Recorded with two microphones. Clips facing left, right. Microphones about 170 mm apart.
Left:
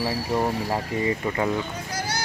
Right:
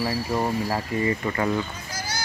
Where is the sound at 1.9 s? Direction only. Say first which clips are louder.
Left 3 dB; 60° left (ahead or behind).